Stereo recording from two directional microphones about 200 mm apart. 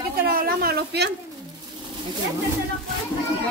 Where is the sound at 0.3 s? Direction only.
45° right (ahead or behind).